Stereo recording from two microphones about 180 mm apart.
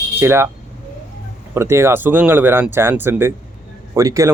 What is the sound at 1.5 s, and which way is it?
Speech, 15° right (ahead or behind).